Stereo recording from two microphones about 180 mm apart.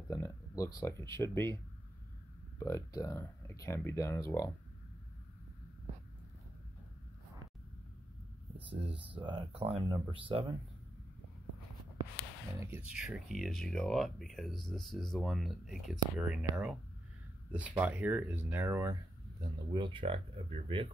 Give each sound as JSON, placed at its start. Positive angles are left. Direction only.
{"t": 0.1, "sound": "speech", "side_deg": 15}
{"t": 2.6, "sound": "speech", "side_deg": 15}
{"t": 8.8, "sound": "speech", "side_deg": -30}
{"t": 12.5, "sound": "speech", "side_deg": -10}
{"t": 19.7, "sound": "speech", "side_deg": -25}